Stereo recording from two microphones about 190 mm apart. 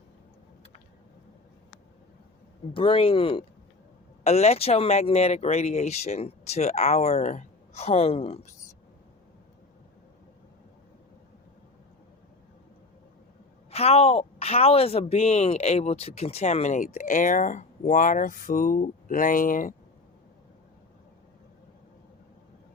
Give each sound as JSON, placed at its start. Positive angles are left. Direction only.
{"t": 2.7, "sound": "speech", "side_deg": 30}
{"t": 13.7, "sound": "speech", "side_deg": 30}